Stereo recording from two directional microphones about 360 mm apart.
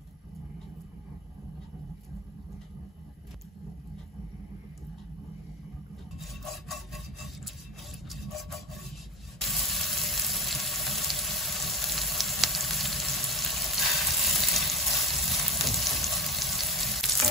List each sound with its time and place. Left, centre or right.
6.1 s rub: centre
8.1 s sawing: centre
9.4 s water tap: centre